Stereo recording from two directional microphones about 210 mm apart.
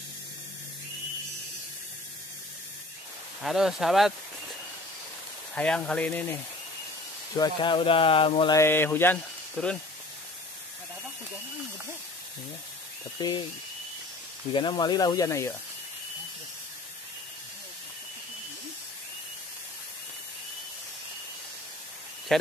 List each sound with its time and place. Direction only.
3.4 s speech: centre (ahead or behind)
5.5 s speech: 5° left (ahead or behind)
7.3 s speech: 20° left (ahead or behind)
8.5 s speech: 10° left (ahead or behind)
13.2 s speech: 20° left (ahead or behind)
14.5 s speech: 25° left (ahead or behind)
22.3 s speech: centre (ahead or behind)